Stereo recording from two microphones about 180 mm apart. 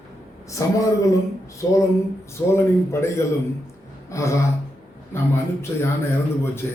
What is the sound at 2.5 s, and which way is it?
Speech, 15° left (ahead or behind).